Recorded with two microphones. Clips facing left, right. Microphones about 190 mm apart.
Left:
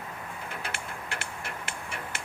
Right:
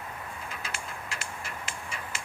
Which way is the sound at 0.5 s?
60° left (ahead or behind).